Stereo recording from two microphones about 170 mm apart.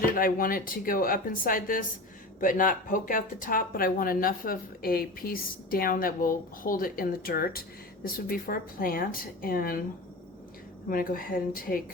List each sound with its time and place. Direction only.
0.2 s speech: 55° left (ahead or behind)
10.8 s speech: 60° left (ahead or behind)